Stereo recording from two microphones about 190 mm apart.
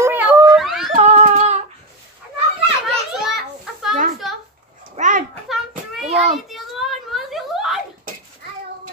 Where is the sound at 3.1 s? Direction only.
Centre (ahead or behind).